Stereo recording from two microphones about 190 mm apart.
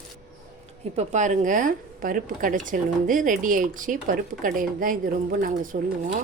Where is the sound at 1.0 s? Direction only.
40° right (ahead or behind).